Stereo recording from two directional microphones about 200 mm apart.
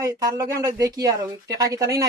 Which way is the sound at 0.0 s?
15° right (ahead or behind).